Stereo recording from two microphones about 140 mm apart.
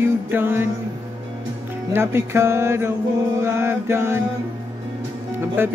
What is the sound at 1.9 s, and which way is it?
Music, 15° right (ahead or behind).